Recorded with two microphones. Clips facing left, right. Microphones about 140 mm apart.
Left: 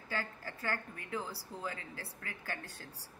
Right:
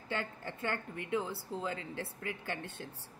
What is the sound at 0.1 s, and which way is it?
Speech, 25° right (ahead or behind).